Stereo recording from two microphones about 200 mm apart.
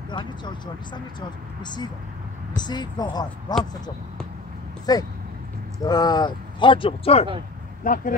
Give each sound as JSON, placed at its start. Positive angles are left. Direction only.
{"t": 0.1, "sound": "speech", "side_deg": 20}
{"t": 4.9, "sound": "speech", "side_deg": 20}
{"t": 7.8, "sound": "speech", "side_deg": 40}